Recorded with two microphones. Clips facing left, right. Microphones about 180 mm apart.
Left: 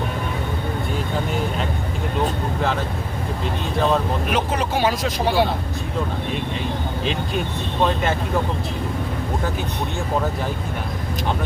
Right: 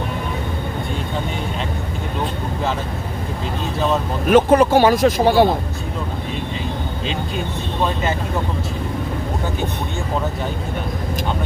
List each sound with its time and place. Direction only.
4.3 s speech: 50° right (ahead or behind)